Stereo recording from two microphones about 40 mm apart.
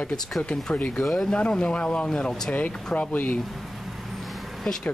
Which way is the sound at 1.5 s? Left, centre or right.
Left.